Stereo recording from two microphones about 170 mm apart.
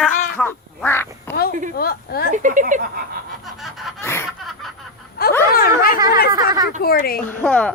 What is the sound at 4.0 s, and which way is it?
Snicker, 15° left (ahead or behind).